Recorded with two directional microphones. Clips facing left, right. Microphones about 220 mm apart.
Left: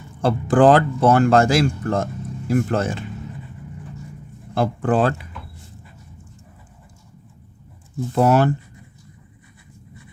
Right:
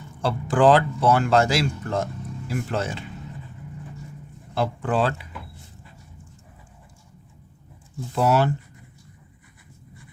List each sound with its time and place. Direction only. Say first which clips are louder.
0.2 s speech: left 5 dB; 50° left (ahead or behind)
4.5 s speech: left 4 dB; 50° left (ahead or behind)
8.1 s speech: left 4 dB; 50° left (ahead or behind)